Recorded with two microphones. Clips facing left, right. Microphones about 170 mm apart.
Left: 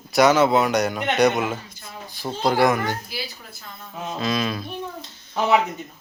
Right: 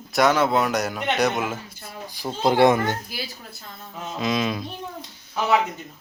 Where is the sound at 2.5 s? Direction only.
25° right (ahead or behind).